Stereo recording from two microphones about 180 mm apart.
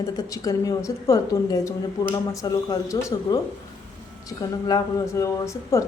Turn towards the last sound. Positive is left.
turn(degrees=15)  # may be behind; listen again after turning